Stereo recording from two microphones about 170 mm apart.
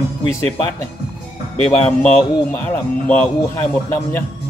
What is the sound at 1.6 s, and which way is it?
Speech, 10° left (ahead or behind).